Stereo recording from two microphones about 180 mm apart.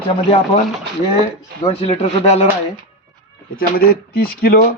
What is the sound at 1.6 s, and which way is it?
Speech, 35° left (ahead or behind).